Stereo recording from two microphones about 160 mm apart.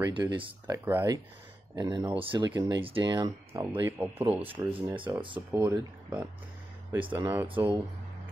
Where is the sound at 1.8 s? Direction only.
25° right (ahead or behind).